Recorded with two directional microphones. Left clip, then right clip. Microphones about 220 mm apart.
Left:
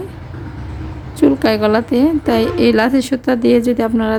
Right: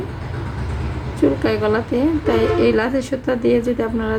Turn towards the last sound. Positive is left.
turn(degrees=45)  # may be behind; listen again after turning